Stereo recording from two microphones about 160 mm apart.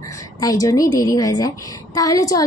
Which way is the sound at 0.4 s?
25° left (ahead or behind).